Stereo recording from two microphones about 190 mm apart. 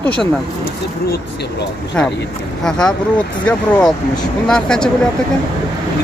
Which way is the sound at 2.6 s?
5° left (ahead or behind).